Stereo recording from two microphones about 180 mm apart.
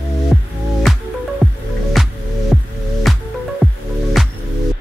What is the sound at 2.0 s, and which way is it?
Music, centre (ahead or behind).